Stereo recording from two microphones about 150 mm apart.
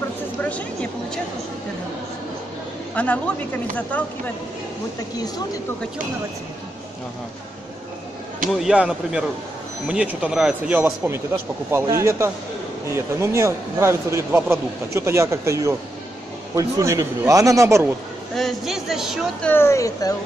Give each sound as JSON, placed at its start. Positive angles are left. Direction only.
{"t": 0.4, "sound": "a sound", "side_deg": 10}
{"t": 2.9, "sound": "a man's voice", "side_deg": 10}
{"t": 5.1, "sound": "speech", "side_deg": 25}
{"t": 8.5, "sound": "speech", "side_deg": -5}
{"t": 11.7, "sound": "a man's voice", "side_deg": -20}
{"t": 18.3, "sound": "speech", "side_deg": 0}
{"t": 19.4, "sound": "speech", "side_deg": 15}